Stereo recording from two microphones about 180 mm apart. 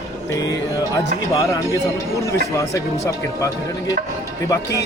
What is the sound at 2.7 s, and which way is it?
Speech, 15° left (ahead or behind).